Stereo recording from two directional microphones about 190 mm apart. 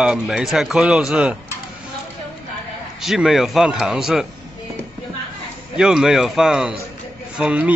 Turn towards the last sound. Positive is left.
turn(degrees=-5)  # may be behind; listen again after turning